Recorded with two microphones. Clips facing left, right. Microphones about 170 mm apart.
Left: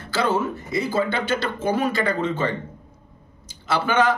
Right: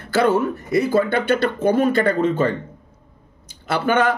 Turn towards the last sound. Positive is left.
turn(degrees=-55)  # may be behind; listen again after turning